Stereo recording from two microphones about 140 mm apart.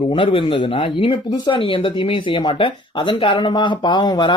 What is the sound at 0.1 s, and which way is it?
Speech, 35° left (ahead or behind).